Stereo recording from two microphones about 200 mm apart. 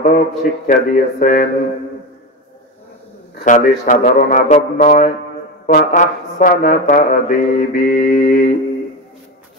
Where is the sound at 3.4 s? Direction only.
40° left (ahead or behind).